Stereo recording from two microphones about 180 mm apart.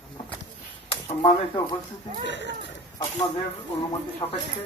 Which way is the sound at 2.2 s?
80° left.